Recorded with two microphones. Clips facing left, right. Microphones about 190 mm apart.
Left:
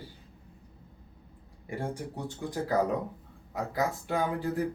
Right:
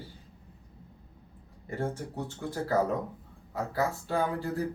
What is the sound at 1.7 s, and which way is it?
Speech, 15° left (ahead or behind).